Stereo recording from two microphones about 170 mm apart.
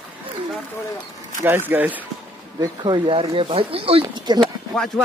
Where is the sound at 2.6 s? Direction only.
25° right (ahead or behind).